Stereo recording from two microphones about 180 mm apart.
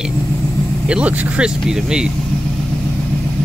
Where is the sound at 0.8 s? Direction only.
5° right (ahead or behind).